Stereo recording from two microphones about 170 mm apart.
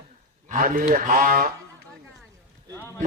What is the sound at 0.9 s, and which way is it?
Speech, 55° right (ahead or behind).